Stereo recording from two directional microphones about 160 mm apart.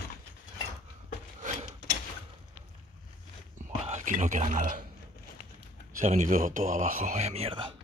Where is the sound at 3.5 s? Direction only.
50° right (ahead or behind).